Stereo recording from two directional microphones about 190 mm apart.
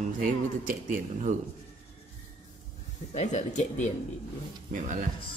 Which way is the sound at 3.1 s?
35° left (ahead or behind).